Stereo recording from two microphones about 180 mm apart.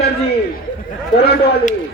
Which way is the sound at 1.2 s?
65° left (ahead or behind).